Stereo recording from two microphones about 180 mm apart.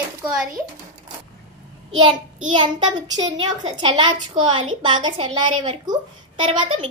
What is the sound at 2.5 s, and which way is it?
A child's voice, 25° right (ahead or behind).